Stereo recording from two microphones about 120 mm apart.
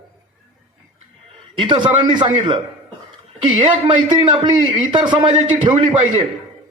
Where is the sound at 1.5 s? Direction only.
40° right (ahead or behind).